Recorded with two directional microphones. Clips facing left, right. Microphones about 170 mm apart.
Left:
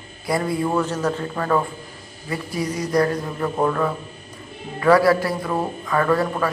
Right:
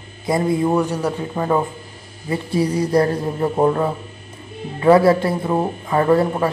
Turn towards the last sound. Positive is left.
turn(degrees=-25)  # may be behind; listen again after turning